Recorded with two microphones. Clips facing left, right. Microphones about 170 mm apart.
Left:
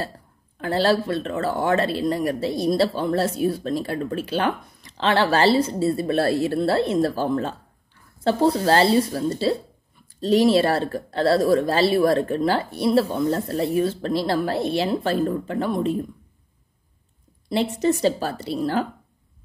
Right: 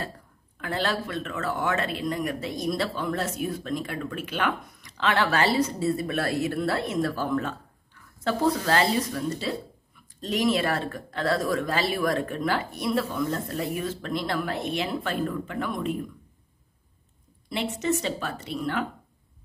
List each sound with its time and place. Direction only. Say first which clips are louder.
0.6 s speech: left 8 dB; 35° left (ahead or behind)
17.5 s speech: left 6 dB; 35° left (ahead or behind)